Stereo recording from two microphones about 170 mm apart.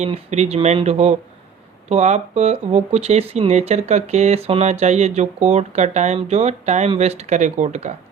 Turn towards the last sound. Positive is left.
turn(degrees=-45)  # may be behind; listen again after turning